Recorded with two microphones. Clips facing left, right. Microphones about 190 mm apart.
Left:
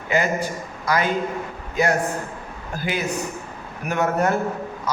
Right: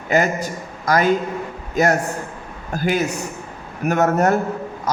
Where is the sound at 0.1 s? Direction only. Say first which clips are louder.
Right 3 dB; 45° right (ahead or behind).